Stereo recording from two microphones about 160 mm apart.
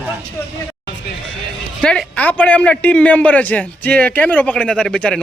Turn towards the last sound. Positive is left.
turn(degrees=5)  # may be behind; listen again after turning